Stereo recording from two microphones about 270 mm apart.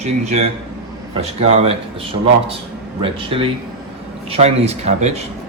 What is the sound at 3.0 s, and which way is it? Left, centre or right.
Speech, centre.